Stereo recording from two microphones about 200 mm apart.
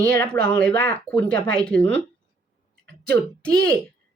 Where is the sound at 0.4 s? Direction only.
5° left (ahead or behind).